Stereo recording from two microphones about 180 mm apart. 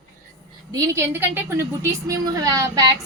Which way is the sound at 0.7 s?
15° right (ahead or behind).